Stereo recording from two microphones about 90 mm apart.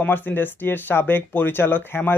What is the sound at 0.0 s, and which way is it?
Speech, 20° left (ahead or behind).